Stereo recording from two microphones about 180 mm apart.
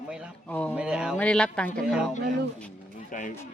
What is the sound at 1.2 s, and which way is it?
Speech, 5° left (ahead or behind).